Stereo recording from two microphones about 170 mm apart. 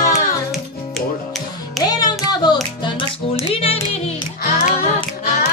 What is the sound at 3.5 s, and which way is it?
Music, 35° left (ahead or behind).